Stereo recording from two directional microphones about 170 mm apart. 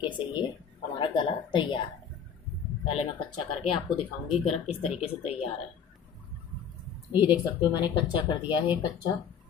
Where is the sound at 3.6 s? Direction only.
30° left (ahead or behind).